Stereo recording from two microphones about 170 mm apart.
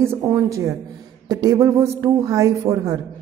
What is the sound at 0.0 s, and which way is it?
A woman's voice, 15° right (ahead or behind).